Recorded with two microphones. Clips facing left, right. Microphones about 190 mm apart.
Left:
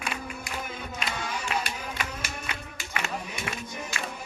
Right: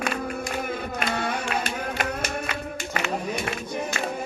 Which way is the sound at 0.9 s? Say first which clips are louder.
Right 6 dB; 60° right (ahead or behind).